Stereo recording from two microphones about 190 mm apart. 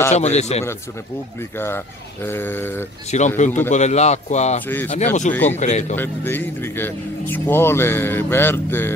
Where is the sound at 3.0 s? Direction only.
40° left (ahead or behind).